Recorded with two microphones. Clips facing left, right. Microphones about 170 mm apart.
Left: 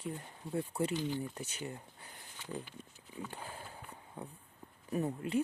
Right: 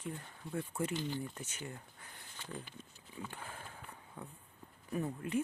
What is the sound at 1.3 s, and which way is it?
Speech, 35° left (ahead or behind).